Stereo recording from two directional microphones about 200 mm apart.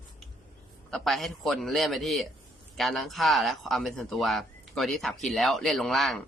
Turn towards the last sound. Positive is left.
turn(degrees=0)  # may be behind; listen again after turning